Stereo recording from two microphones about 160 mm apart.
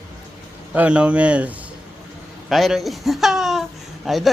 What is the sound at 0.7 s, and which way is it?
Speech, 10° right (ahead or behind).